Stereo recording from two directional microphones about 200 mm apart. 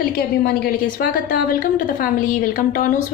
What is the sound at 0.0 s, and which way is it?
A woman's voice, 50° left (ahead or behind).